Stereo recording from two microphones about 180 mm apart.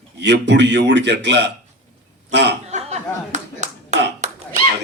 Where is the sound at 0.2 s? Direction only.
80° right.